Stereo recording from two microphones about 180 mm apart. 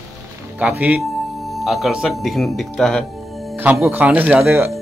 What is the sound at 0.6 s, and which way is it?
Speech, 10° right (ahead or behind).